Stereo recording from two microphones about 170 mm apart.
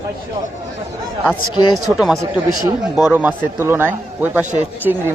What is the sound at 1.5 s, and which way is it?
Speech, 25° left (ahead or behind).